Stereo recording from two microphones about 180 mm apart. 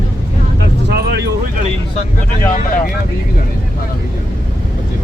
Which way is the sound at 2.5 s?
50° left (ahead or behind).